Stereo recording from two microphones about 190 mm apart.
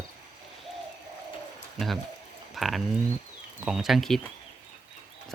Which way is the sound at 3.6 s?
Centre (ahead or behind).